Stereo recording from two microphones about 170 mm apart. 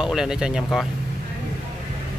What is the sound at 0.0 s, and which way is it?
Speech, 5° right (ahead or behind).